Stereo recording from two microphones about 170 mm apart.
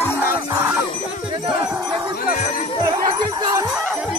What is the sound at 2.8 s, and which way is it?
Jingle bell, 25° right (ahead or behind).